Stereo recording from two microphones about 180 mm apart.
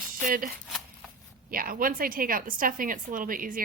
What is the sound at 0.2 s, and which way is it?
A woman's voice, 50° right (ahead or behind).